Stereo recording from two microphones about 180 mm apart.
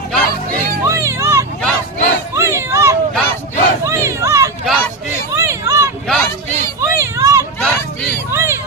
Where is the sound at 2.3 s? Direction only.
15° right (ahead or behind).